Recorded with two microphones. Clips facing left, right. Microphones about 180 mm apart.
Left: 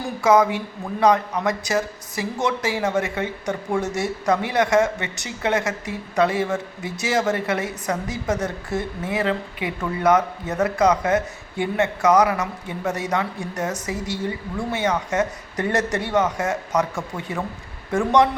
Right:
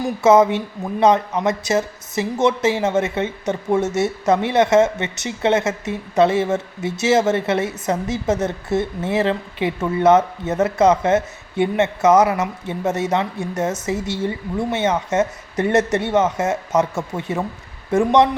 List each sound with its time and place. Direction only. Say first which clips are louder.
0.0 s speech: right 4 dB; 25° right (ahead or behind)